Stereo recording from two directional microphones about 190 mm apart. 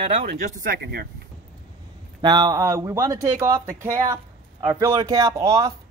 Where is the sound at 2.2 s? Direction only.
20° right (ahead or behind).